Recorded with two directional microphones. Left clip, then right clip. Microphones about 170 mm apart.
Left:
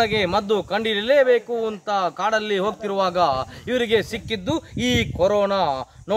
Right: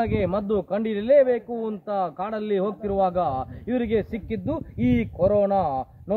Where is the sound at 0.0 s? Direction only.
15° left (ahead or behind).